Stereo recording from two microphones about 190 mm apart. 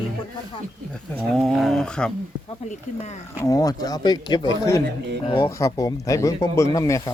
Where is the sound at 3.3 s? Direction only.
20° left (ahead or behind).